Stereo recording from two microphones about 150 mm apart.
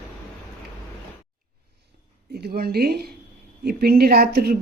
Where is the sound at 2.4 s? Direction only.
90° right.